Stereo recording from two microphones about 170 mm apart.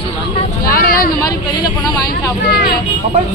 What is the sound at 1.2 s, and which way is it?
Vehicle, 25° left (ahead or behind).